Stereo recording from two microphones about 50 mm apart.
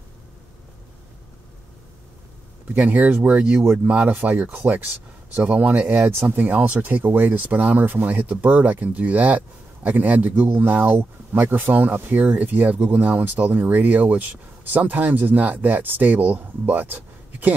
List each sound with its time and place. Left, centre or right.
2.7 s speech: right
6.0 s speech: right